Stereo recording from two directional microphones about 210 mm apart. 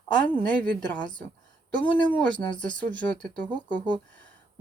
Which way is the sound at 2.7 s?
5° left (ahead or behind).